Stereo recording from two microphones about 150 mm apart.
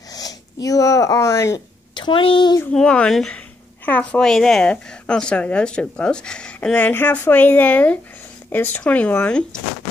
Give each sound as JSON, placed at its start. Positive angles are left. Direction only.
{"t": 0.1, "sound": "speech", "side_deg": 25}
{"t": 2.0, "sound": "a woman's voice", "side_deg": 35}
{"t": 2.6, "sound": "a woman's voice", "side_deg": 5}